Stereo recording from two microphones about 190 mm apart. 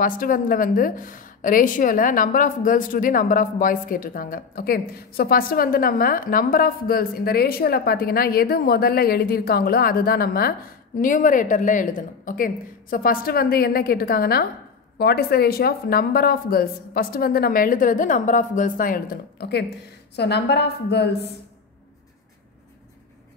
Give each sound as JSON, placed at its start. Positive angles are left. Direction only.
{"t": 0.0, "sound": "a woman's voice", "side_deg": 45}